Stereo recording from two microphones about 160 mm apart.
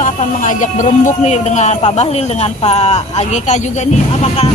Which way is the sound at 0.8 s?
45° left (ahead or behind).